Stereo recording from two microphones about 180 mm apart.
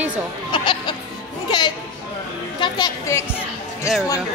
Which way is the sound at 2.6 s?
20° left (ahead or behind).